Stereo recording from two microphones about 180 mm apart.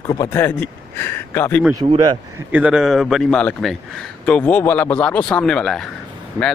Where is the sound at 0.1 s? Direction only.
15° left (ahead or behind).